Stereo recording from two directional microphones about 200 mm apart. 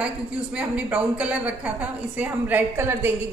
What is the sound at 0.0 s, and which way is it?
Speech, 5° right (ahead or behind).